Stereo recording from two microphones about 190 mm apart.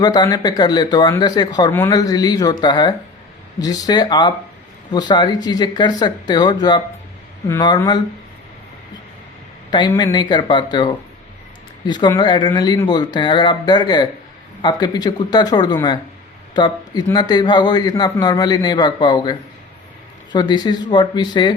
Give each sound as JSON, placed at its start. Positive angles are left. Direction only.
{"t": 0.0, "sound": "a man's voice", "side_deg": 20}
{"t": 9.9, "sound": "a man's voice", "side_deg": 20}